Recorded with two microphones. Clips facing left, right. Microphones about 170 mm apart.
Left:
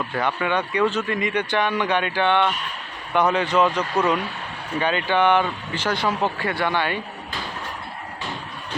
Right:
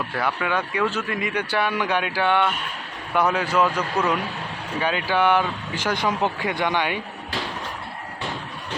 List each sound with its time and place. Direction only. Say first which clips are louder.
0.1 s speech: left 2 dB; 5° right (ahead or behind)